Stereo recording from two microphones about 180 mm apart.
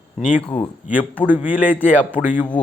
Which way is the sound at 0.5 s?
30° left (ahead or behind).